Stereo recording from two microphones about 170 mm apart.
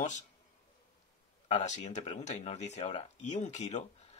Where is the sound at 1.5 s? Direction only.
40° left (ahead or behind).